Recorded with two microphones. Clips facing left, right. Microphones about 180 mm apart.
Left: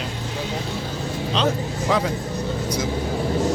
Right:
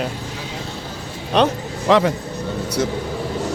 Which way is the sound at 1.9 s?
90° right.